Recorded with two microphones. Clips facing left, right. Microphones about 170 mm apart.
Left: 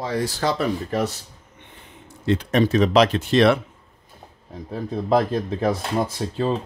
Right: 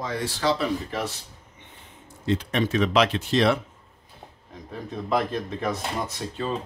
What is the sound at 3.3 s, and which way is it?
Speech, 65° left (ahead or behind).